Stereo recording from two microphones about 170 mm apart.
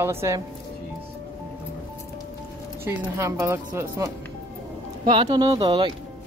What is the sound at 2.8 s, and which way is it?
Speech, 15° right (ahead or behind).